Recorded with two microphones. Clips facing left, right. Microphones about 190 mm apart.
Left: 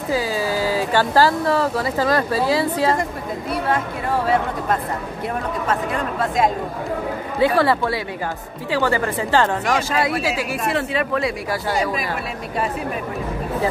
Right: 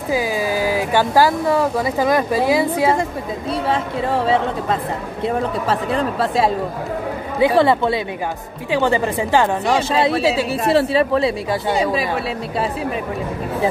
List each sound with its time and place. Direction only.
0.1 s speech: 15° right (ahead or behind)
3.6 s speech: 25° right (ahead or behind)
7.3 s speech: 20° right (ahead or behind)
9.9 s speech: 25° right (ahead or behind)